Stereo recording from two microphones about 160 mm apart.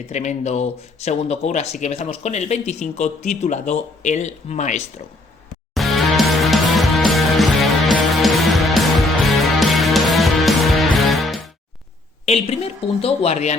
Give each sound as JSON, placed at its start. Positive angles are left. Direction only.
{"t": 0.1, "sound": "speech", "side_deg": 45}
{"t": 5.7, "sound": "music", "side_deg": 0}
{"t": 12.3, "sound": "a woman's voice", "side_deg": 40}